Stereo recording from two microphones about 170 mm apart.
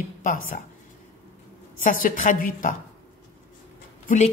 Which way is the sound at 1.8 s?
55° left (ahead or behind).